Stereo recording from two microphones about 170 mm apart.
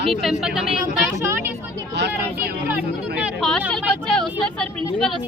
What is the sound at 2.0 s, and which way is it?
Speech, 90° right.